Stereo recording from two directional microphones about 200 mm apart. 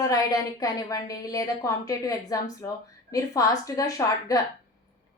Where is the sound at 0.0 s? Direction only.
15° left (ahead or behind).